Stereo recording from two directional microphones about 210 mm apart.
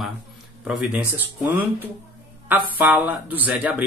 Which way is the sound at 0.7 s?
5° right (ahead or behind).